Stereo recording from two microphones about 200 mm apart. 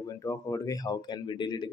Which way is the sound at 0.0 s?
15° left (ahead or behind).